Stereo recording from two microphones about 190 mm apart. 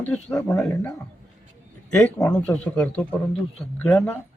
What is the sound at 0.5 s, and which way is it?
Speech, 15° left (ahead or behind).